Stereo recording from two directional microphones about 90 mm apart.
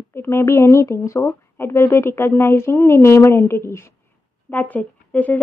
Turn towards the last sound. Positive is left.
turn(degrees=15)  # may be behind; listen again after turning